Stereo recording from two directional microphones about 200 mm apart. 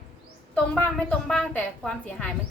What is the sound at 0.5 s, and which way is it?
A woman's voice, 5° left (ahead or behind).